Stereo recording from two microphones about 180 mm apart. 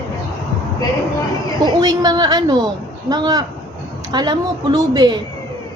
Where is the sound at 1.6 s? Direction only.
20° right (ahead or behind).